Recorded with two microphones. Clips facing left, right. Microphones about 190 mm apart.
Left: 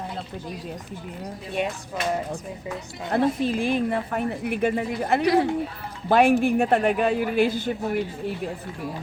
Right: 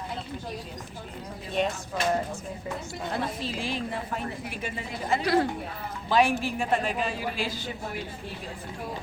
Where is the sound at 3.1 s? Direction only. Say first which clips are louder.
Left 11 dB; 55° left (ahead or behind).